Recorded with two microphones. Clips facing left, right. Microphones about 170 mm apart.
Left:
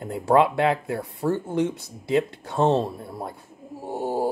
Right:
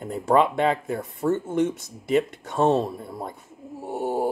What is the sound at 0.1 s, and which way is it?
Speech, 10° left (ahead or behind).